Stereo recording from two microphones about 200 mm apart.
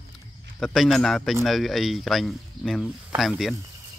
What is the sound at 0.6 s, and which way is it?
Speech, centre (ahead or behind).